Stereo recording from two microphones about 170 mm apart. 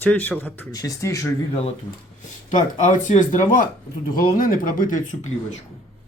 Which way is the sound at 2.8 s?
45° left (ahead or behind).